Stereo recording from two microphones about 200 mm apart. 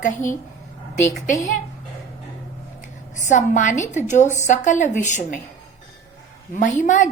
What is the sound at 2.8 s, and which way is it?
A woman's voice, 40° left (ahead or behind).